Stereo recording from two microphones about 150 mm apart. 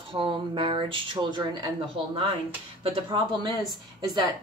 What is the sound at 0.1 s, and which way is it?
A woman's voice, 35° right (ahead or behind).